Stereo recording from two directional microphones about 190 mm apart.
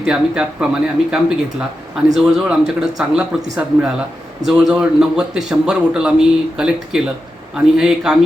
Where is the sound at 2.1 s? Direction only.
Centre (ahead or behind).